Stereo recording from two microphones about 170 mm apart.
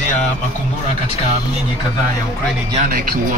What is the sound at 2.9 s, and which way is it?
Speech, 60° right (ahead or behind).